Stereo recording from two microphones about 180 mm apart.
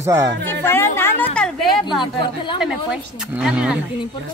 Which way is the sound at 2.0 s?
25° left (ahead or behind).